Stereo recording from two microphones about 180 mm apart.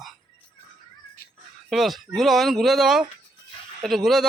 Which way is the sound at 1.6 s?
Centre (ahead or behind).